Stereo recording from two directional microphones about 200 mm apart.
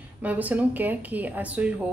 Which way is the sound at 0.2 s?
5° right (ahead or behind).